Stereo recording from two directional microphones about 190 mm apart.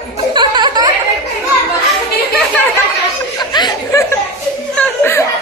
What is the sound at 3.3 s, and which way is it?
Laughter, 20° left (ahead or behind).